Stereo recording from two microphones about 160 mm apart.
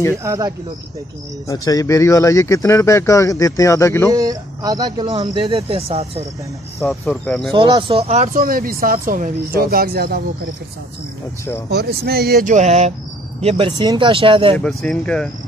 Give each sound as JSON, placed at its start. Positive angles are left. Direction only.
{"t": 0.1, "sound": "speech", "side_deg": -20}
{"t": 1.5, "sound": "speech", "side_deg": 20}
{"t": 4.1, "sound": "speech", "side_deg": -20}
{"t": 6.9, "sound": "speech", "side_deg": 5}
{"t": 7.5, "sound": "speech", "side_deg": -30}
{"t": 8.3, "sound": "speech", "side_deg": -65}
{"t": 11.7, "sound": "speech", "side_deg": -85}
{"t": 12.4, "sound": "speech", "side_deg": -45}
{"t": 14.6, "sound": "speech", "side_deg": 5}